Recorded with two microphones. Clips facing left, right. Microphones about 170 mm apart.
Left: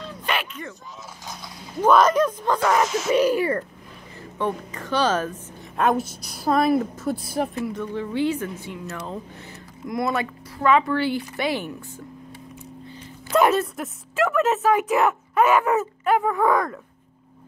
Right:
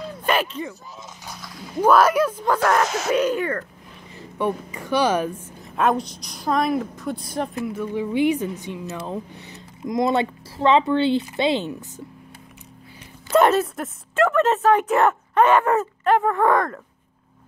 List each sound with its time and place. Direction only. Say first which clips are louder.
0.2 s a sound: right 6 dB; 40° right (ahead or behind)
1.2 s dog: left 2 dB; 15° left (ahead or behind)
1.8 s speech: right 1 dB; 10° right (ahead or behind)
2.6 s speech: even; 5° left (ahead or behind)
2.9 s speech: even; 65° right (ahead or behind)
3.2 s speech: left 3 dB; 5° left (ahead or behind)
4.2 s a woman's voice: right 2 dB; 15° right (ahead or behind)
5.8 s speech: right 1 dB; centre (ahead or behind); by 11.7 s 20° right (ahead or behind)
13.3 s speech: right 2 dB; centre (ahead or behind)